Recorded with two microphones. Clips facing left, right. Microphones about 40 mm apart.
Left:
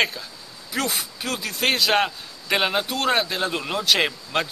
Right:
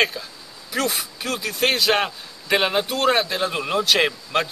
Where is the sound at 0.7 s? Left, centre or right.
Centre.